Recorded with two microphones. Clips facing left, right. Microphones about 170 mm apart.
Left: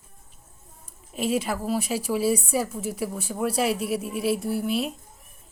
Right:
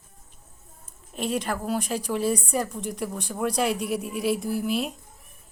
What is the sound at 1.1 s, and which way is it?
A woman's voice, 5° left (ahead or behind).